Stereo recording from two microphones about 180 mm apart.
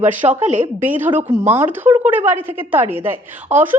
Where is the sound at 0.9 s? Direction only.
10° right (ahead or behind).